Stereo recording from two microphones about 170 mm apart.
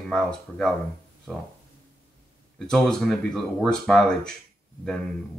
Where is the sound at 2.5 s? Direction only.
5° left (ahead or behind).